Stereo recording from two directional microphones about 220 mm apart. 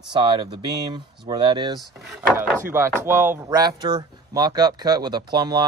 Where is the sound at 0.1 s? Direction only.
20° right (ahead or behind).